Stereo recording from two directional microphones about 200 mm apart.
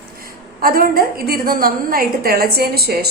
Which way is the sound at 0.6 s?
45° right (ahead or behind).